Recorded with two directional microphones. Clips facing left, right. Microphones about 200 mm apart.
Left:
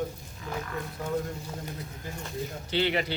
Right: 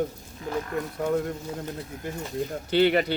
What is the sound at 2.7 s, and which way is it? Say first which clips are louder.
Speech: right 7 dB; 50° right (ahead or behind).